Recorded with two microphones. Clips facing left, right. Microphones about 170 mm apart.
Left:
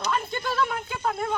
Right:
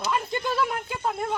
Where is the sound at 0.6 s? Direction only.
10° right (ahead or behind).